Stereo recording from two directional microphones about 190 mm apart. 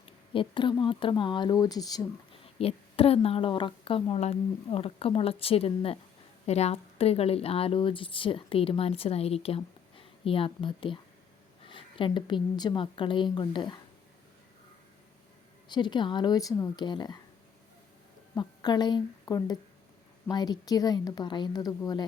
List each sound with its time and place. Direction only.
0.3 s a woman's voice: 25° left (ahead or behind)
2.6 s a woman's voice: 30° left (ahead or behind)
15.7 s a woman's voice: 25° left (ahead or behind)
18.3 s a woman's voice: 20° left (ahead or behind)